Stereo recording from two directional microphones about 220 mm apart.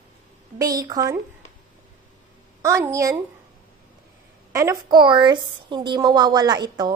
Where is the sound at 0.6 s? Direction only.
15° right (ahead or behind).